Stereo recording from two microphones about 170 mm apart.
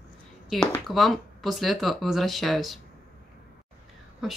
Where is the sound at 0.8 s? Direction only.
Centre (ahead or behind).